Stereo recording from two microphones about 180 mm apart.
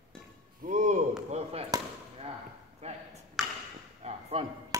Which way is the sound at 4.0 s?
35° right (ahead or behind).